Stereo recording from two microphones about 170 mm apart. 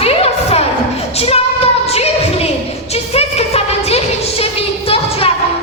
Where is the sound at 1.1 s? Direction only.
35° left (ahead or behind).